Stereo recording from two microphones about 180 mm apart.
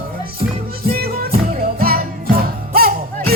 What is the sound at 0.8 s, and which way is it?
Music, 55° right (ahead or behind).